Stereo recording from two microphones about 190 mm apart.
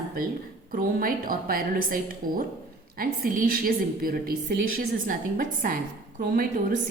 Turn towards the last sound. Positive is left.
turn(degrees=-50)  # may be behind; listen again after turning